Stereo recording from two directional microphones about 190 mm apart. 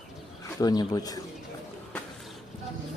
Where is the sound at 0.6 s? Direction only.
20° left (ahead or behind).